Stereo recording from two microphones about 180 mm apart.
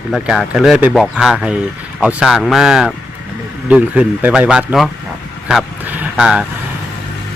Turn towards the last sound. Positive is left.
turn(degrees=-5)  # may be behind; listen again after turning